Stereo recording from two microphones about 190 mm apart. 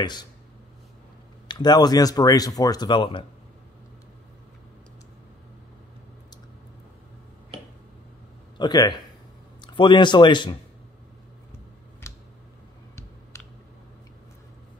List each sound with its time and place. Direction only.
0.0 s speech: 20° left (ahead or behind)
1.5 s speech: 20° left (ahead or behind)
8.5 s a man's voice: 20° left (ahead or behind)